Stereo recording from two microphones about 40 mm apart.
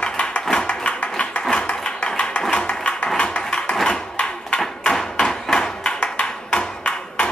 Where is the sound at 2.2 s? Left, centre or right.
Left.